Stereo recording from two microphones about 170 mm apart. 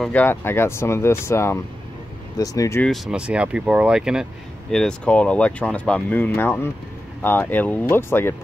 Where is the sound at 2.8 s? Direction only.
Centre (ahead or behind).